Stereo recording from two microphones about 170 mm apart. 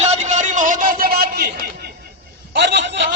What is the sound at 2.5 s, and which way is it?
Speech, 90° right.